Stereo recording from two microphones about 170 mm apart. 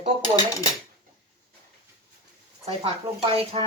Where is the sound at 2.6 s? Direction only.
35° right (ahead or behind).